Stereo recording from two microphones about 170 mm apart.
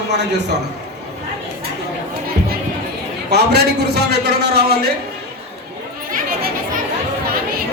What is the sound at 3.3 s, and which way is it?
A man's voice, 75° right (ahead or behind).